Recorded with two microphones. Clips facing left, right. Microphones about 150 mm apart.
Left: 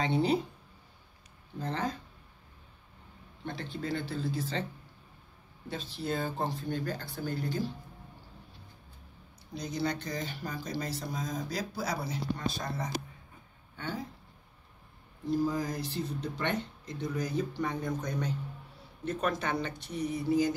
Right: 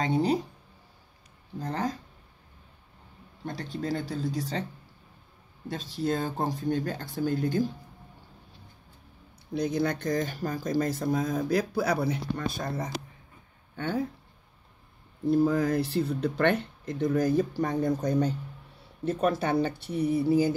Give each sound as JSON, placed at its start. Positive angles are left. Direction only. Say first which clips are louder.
{"t": 0.0, "sound": "speech", "louder": "right 2 dB", "side_deg": -40}
{"t": 1.6, "sound": "speech", "louder": "right 3 dB", "side_deg": -40}
{"t": 3.4, "sound": "speech", "louder": "right 4 dB", "side_deg": -40}
{"t": 5.7, "sound": "speech", "louder": "right 6 dB", "side_deg": -40}
{"t": 9.5, "sound": "speech", "louder": "right 6 dB", "side_deg": -55}
{"t": 15.2, "sound": "speech", "louder": "right 7 dB", "side_deg": -60}
{"t": 19.4, "sound": "speech", "louder": "right 7 dB", "side_deg": -35}
{"t": 19.7, "sound": "a sound", "louder": "right 6 dB", "side_deg": -5}
{"t": 20.1, "sound": "speech", "louder": "right 5 dB", "side_deg": -30}